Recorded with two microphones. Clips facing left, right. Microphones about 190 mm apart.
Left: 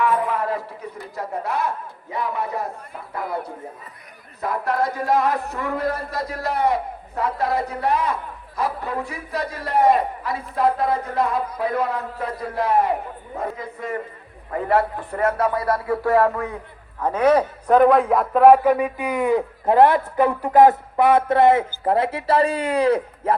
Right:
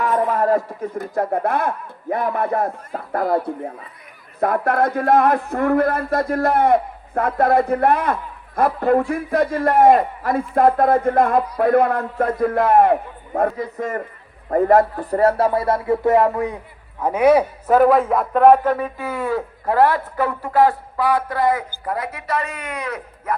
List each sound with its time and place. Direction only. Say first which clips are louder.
0.0 s a man's voice: right 3 dB; 45° right (ahead or behind); by 13.5 s 60° right (ahead or behind)
13.7 s a man's voice: right 3 dB; 45° right (ahead or behind); by 23.3 s 30° left (ahead or behind)